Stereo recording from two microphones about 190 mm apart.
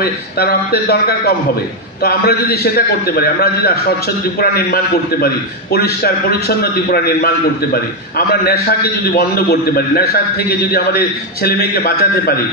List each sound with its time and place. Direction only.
0.0 s a man's voice: 55° left (ahead or behind)
8.3 s a man's voice: 55° left (ahead or behind)